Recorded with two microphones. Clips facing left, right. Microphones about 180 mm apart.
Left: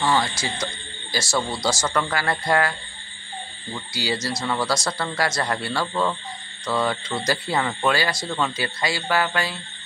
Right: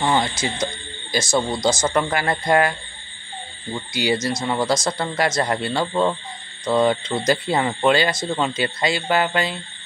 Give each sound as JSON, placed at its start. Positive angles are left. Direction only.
{"t": 0.0, "sound": "speech", "side_deg": -20}
{"t": 3.7, "sound": "speech", "side_deg": -20}